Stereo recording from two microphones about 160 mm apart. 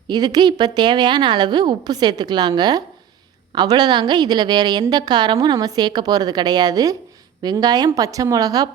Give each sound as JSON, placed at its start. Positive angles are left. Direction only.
{"t": 0.1, "sound": "a woman's voice", "side_deg": -25}